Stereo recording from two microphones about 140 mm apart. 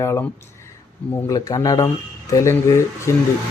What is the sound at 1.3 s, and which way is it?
Speech, 25° left (ahead or behind).